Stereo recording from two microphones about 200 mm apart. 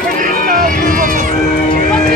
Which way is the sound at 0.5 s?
40° right (ahead or behind).